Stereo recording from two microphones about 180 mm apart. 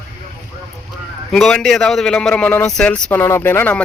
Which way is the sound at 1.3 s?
Centre (ahead or behind).